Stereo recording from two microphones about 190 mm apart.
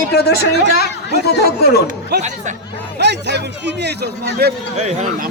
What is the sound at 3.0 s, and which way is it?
Speech, 65° right (ahead or behind).